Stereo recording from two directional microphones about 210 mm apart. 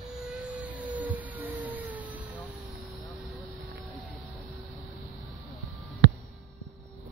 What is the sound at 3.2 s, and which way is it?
Vehicle, centre (ahead or behind).